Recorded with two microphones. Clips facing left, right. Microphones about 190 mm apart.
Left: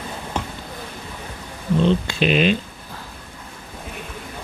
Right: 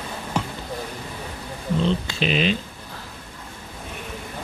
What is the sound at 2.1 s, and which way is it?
Speech, 55° left (ahead or behind).